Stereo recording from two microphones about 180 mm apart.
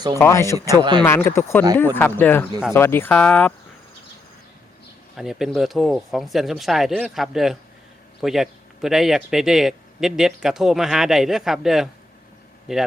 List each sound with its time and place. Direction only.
0.2 s speech: 15° left (ahead or behind)
5.1 s speech: centre (ahead or behind)